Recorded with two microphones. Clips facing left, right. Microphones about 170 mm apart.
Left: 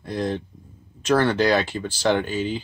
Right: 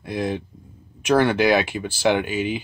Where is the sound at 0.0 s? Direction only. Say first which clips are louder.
Right 1 dB; 10° right (ahead or behind).